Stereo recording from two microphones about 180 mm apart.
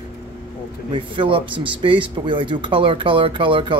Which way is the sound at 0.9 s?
30° right (ahead or behind).